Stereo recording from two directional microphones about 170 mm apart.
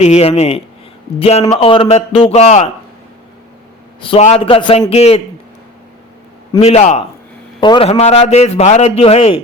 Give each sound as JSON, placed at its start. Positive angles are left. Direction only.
{"t": 0.0, "sound": "a man's voice", "side_deg": 40}
{"t": 4.2, "sound": "a man's voice", "side_deg": 35}
{"t": 6.6, "sound": "a man's voice", "side_deg": 40}
{"t": 7.6, "sound": "a man's voice", "side_deg": 30}